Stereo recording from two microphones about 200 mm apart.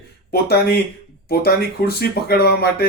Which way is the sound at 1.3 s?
50° left (ahead or behind).